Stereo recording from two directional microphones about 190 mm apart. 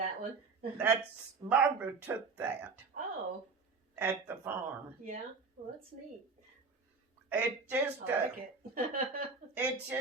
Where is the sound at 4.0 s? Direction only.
10° right (ahead or behind).